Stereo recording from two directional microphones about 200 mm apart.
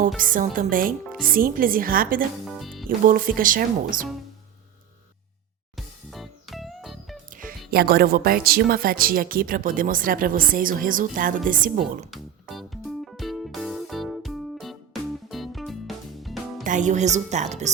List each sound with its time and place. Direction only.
0.2 s speech: 45° right (ahead or behind)
2.4 s speech: centre (ahead or behind)
2.8 s speech: 45° right (ahead or behind)
5.7 s music: centre (ahead or behind)
7.7 s speech: 50° right (ahead or behind)
11.8 s music: centre (ahead or behind)
16.6 s speech: 40° right (ahead or behind)